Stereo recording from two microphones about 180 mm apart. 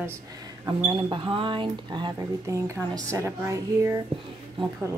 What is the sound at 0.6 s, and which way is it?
A woman's voice, 25° right (ahead or behind).